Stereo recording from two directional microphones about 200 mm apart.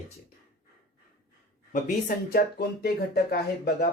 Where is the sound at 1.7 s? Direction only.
45° left (ahead or behind).